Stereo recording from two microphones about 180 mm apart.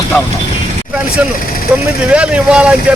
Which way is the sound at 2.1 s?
5° right (ahead or behind).